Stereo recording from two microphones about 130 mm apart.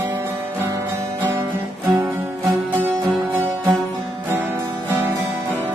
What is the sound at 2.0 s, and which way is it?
Music, 20° right (ahead or behind).